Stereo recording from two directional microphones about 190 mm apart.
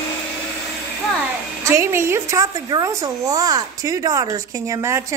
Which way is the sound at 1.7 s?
15° right (ahead or behind).